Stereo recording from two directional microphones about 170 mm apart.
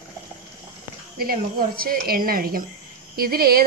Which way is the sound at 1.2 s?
60° right (ahead or behind).